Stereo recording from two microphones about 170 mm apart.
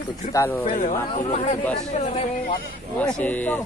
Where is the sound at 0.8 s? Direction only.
45° left (ahead or behind).